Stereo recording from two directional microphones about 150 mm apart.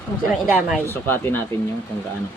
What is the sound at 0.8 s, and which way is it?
Speech, 15° left (ahead or behind).